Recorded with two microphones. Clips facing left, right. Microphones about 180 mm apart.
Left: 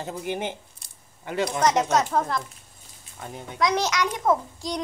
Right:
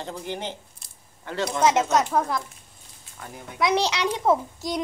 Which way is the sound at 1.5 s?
5° right (ahead or behind).